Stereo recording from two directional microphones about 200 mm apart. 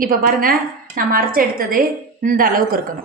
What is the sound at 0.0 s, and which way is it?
A woman's voice, 45° right (ahead or behind).